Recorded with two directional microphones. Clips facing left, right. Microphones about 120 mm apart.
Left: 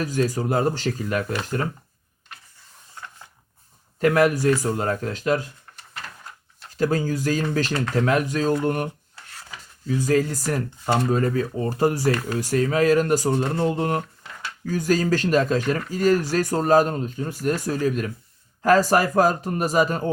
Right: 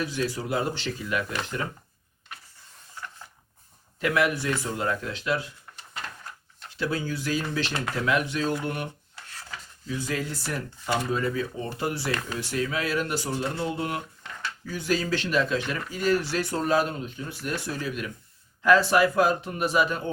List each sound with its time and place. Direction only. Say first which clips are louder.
0.0 s speech: left 5 dB; 45° left (ahead or behind)
4.0 s speech: left 7 dB; 40° left (ahead or behind)
6.7 s speech: left 7 dB; 45° left (ahead or behind)